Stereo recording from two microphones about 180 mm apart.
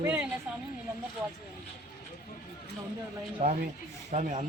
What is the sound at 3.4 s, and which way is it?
Speech, 45° right (ahead or behind).